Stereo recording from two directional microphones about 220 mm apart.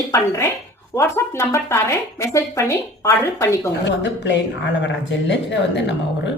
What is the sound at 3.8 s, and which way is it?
A woman's voice, 55° left (ahead or behind).